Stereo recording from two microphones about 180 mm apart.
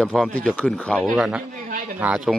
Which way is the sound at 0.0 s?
Centre (ahead or behind).